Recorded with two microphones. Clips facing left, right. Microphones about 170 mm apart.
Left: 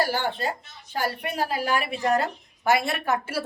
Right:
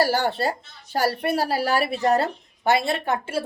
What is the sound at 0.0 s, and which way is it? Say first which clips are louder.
A woman's voice: right 4 dB; 40° right (ahead or behind).